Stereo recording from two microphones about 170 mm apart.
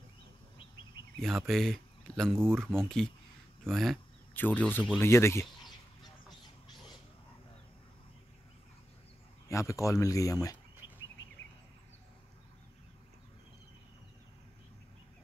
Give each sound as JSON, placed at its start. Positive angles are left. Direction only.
{"t": 1.1, "sound": "speech", "side_deg": 0}
{"t": 9.5, "sound": "speech", "side_deg": 15}
{"t": 10.8, "sound": "bird", "side_deg": 90}